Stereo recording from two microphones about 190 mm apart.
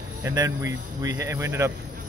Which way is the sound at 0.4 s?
15° right (ahead or behind).